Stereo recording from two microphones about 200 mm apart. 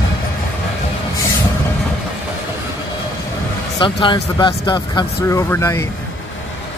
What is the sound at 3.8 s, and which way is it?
Speech, 25° left (ahead or behind).